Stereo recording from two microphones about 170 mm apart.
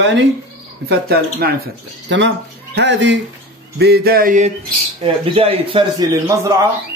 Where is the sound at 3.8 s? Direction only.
65° right (ahead or behind); by 4.5 s 50° right (ahead or behind).